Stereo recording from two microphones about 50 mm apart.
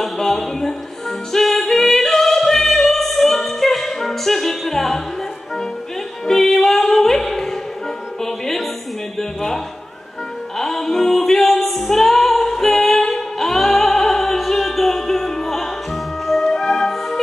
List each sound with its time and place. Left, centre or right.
0.0 s a sound: centre
1.3 s music: centre
6.2 s music: centre
10.6 s music: centre